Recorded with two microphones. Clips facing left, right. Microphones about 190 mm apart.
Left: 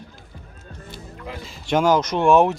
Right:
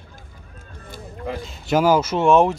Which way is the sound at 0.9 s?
50° right (ahead or behind).